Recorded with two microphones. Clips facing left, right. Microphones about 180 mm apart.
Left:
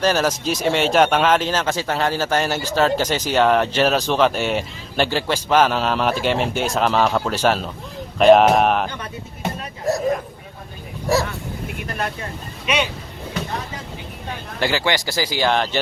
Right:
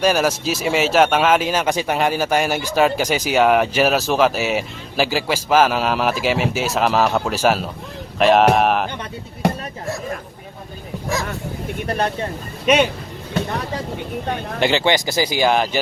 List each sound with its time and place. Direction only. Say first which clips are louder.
0.0 s speech: right 1 dB; 10° right (ahead or behind)
11.9 s speech: right 7 dB; 35° right (ahead or behind)
14.6 s speech: right 3 dB; 20° right (ahead or behind)